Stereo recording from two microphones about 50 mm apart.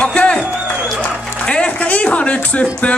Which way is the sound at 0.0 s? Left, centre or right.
Left.